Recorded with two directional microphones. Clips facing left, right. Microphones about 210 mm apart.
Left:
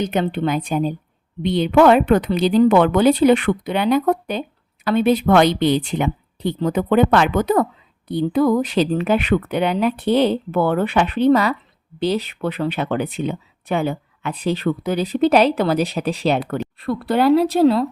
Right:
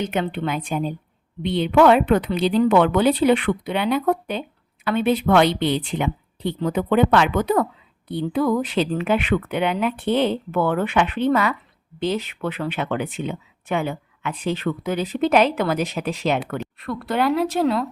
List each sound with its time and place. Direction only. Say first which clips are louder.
0.0 s a woman's voice: left 4 dB; 40° left (ahead or behind)